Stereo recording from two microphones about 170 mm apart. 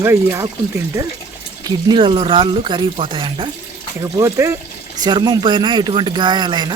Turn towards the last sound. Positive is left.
turn(degrees=-25)  # may be behind; listen again after turning